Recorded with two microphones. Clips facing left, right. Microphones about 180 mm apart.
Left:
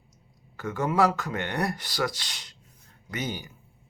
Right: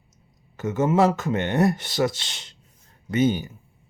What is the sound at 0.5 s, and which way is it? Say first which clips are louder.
Speech: right 5 dB; 20° right (ahead or behind).